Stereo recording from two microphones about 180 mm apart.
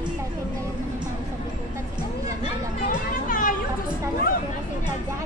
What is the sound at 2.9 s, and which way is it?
Children playing, 50° left (ahead or behind).